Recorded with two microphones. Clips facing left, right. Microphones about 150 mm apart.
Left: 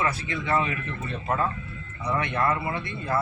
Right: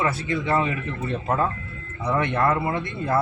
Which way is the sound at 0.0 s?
30° right (ahead or behind).